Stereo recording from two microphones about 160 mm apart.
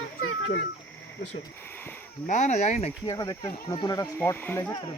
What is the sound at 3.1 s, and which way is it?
Speech, 20° left (ahead or behind).